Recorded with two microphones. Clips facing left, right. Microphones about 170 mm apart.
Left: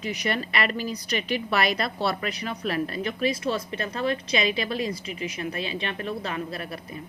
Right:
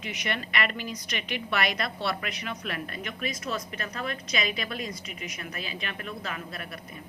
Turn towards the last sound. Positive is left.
turn(degrees=30)  # may be behind; listen again after turning